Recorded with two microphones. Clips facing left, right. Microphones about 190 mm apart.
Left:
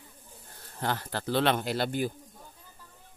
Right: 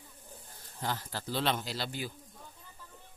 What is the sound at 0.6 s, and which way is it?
Speech, 65° left (ahead or behind).